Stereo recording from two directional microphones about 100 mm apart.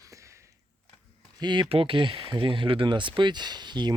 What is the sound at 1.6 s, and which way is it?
Speech, 70° right (ahead or behind).